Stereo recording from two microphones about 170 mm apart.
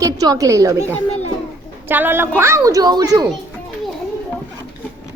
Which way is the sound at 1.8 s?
10° right (ahead or behind).